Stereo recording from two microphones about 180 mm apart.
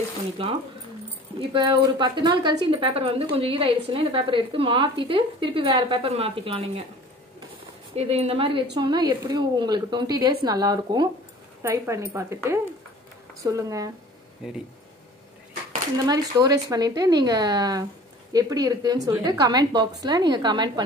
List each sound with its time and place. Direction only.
0.4 s a woman's voice: 30° right (ahead or behind)
7.9 s a woman's voice: 35° right (ahead or behind); by 13.9 s 20° right (ahead or behind)
16.1 s speech: 20° right (ahead or behind)